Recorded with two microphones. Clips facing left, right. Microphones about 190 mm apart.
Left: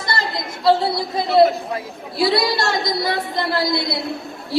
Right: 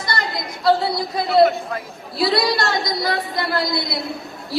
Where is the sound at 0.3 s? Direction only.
Centre (ahead or behind).